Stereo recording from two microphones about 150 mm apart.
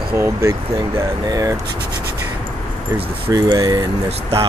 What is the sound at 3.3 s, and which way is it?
Speech, 25° right (ahead or behind).